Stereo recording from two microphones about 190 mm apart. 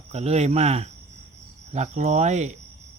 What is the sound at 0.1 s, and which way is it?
Speech, 35° right (ahead or behind).